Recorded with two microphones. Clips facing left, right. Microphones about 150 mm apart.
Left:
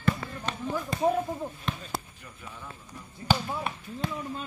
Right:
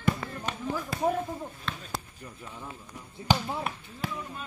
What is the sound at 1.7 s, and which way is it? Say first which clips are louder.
Basketball bounce: left 2 dB; 15° left (ahead or behind).